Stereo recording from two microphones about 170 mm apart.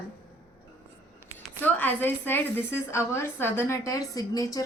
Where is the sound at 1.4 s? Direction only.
10° left (ahead or behind).